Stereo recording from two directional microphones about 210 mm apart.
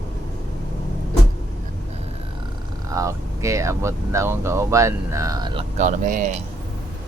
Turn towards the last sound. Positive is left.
turn(degrees=-40)  # may be behind; listen again after turning